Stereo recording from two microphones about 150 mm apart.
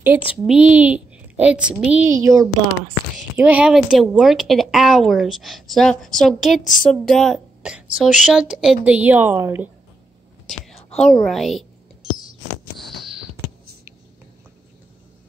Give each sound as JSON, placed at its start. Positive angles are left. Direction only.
{"t": 0.0, "sound": "a woman's voice", "side_deg": -10}
{"t": 2.0, "sound": "speech", "side_deg": -20}
{"t": 3.3, "sound": "a woman's voice", "side_deg": -10}
{"t": 11.0, "sound": "speech", "side_deg": 5}
{"t": 12.7, "sound": "a sound", "side_deg": 0}